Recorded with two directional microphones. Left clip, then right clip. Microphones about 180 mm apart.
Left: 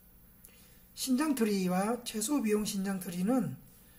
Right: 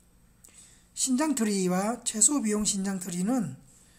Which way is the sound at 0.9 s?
35° right (ahead or behind).